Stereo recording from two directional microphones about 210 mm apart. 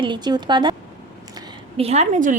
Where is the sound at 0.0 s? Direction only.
20° right (ahead or behind).